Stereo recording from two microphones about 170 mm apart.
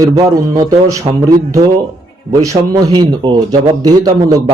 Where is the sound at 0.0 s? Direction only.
20° right (ahead or behind).